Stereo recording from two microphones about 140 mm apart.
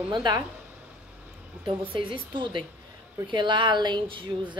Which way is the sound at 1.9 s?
35° right (ahead or behind).